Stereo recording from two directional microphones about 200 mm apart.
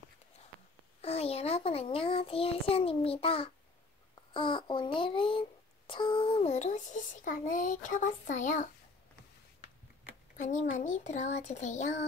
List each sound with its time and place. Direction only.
1.0 s a child's voice: 30° left (ahead or behind)
10.3 s a child's voice: 35° left (ahead or behind)